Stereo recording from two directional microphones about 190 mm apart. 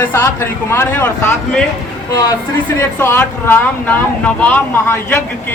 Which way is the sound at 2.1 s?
20° left (ahead or behind).